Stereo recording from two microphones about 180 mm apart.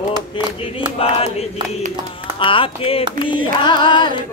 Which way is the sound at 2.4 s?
30° left (ahead or behind).